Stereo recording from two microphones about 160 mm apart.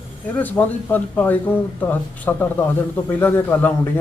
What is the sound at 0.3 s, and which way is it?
Speech, 10° left (ahead or behind).